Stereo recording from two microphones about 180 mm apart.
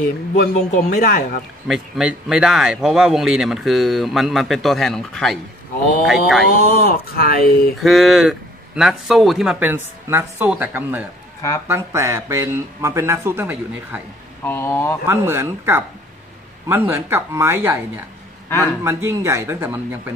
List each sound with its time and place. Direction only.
0.4 s speech: 50° left (ahead or behind)
1.7 s speech: 5° right (ahead or behind)
6.9 s speech: 55° left (ahead or behind)
7.8 s speech: centre (ahead or behind)
14.4 s speech: 10° left (ahead or behind)
15.0 s speech: 15° right (ahead or behind)
18.5 s speech: 15° left (ahead or behind)
18.9 s speech: 15° right (ahead or behind)